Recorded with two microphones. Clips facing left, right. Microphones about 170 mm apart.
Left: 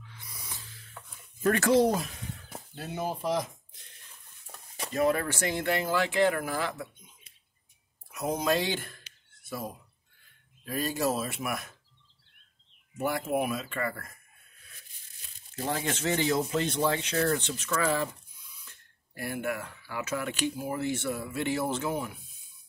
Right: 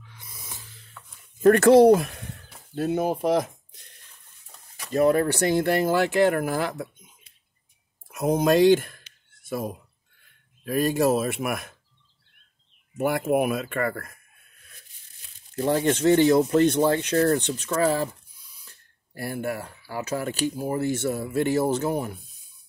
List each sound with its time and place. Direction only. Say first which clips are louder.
0.1 s a sound: right 2 dB; 20° right (ahead or behind)
1.4 s speech: right 9 dB; 55° right (ahead or behind)
2.7 s speech: right 10 dB; 50° right (ahead or behind)
4.9 s speech: right 7 dB; 40° right (ahead or behind)
8.1 s speech: right 7 dB; 50° right (ahead or behind)
12.9 s speech: right 6 dB; 55° right (ahead or behind)
15.7 s speech: right 11 dB; 35° right (ahead or behind)